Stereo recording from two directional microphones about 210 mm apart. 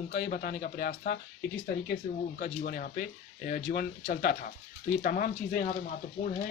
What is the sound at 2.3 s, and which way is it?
Speech, 40° left (ahead or behind).